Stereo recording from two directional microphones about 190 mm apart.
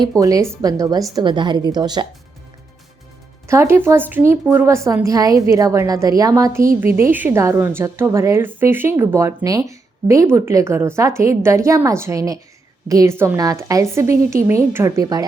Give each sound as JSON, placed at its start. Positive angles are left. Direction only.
{"t": 0.0, "sound": "a woman's voice", "side_deg": -15}
{"t": 3.4, "sound": "speech", "side_deg": -15}